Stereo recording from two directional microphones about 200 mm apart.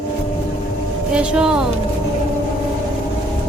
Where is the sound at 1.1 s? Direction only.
5° right (ahead or behind).